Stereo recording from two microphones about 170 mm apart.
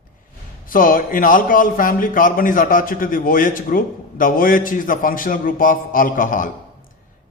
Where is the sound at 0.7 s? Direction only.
55° left (ahead or behind).